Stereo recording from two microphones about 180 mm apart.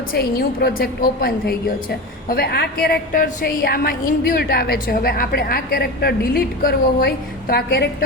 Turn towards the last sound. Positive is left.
turn(degrees=60)  # may be behind; listen again after turning